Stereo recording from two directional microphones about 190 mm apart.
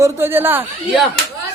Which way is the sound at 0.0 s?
15° right (ahead or behind).